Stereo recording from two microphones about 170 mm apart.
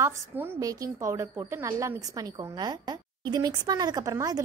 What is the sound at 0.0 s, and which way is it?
A woman's voice, 15° right (ahead or behind).